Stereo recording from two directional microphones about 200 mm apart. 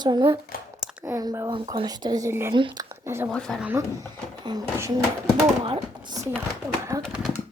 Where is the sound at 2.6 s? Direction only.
25° right (ahead or behind).